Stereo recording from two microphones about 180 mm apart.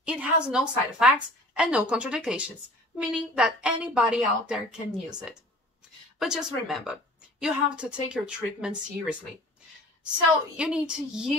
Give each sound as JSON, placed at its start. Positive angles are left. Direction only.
{"t": 0.0, "sound": "a woman's voice", "side_deg": -5}
{"t": 6.1, "sound": "a woman's voice", "side_deg": -5}
{"t": 10.6, "sound": "a woman's voice", "side_deg": -5}